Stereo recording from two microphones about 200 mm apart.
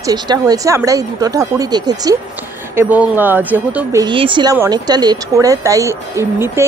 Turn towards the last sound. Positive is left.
turn(degrees=-15)  # may be behind; listen again after turning